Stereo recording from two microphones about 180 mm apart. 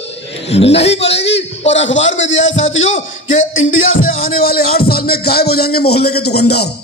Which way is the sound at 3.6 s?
90° left.